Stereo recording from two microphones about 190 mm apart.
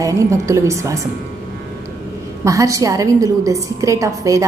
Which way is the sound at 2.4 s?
15° right (ahead or behind).